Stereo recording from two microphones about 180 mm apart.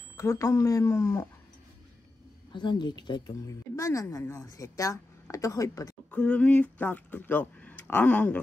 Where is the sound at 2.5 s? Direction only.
25° left (ahead or behind).